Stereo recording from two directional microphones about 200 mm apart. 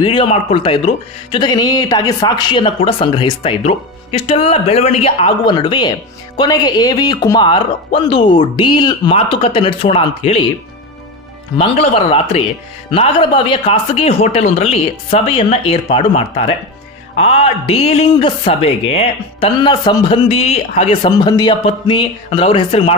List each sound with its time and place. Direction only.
0.0 s speech: 30° left (ahead or behind)
11.5 s speech: 30° left (ahead or behind)